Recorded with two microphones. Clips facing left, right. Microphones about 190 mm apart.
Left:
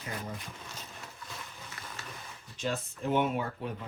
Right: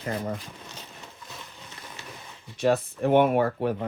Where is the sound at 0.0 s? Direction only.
60° right (ahead or behind).